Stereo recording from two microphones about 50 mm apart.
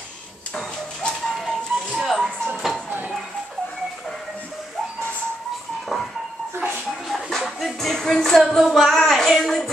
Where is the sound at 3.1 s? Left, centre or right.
Centre.